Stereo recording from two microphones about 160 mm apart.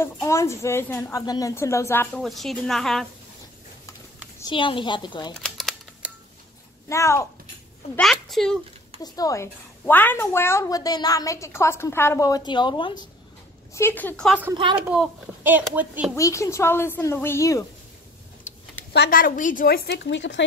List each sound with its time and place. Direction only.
0.0 s a woman's voice: 15° left (ahead or behind)
2.2 s speech: centre (ahead or behind)
4.4 s a woman's voice: 30° left (ahead or behind)
5.3 s camera: 5° left (ahead or behind)
6.9 s a woman's voice: 20° left (ahead or behind)
8.0 s speech: centre (ahead or behind)
9.0 s a woman's voice: 25° left (ahead or behind)
13.7 s a woman's voice: 15° left (ahead or behind)
14.5 s a woman's voice: 30° right (ahead or behind)
14.9 s speech: 10° right (ahead or behind)
16.2 s a woman's voice: 20° left (ahead or behind)
18.9 s a woman's voice: 60° left (ahead or behind); by 20.4 s 90° left